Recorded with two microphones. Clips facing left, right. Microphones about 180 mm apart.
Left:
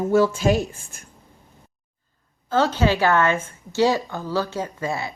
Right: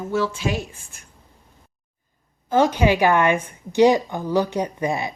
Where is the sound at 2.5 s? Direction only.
15° right (ahead or behind).